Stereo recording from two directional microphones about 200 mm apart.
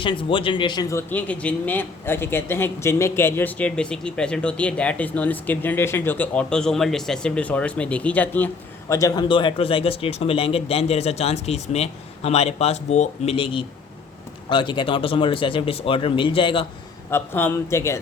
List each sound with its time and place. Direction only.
0.0 s speech: 25° left (ahead or behind)
17.1 s speech: 10° left (ahead or behind)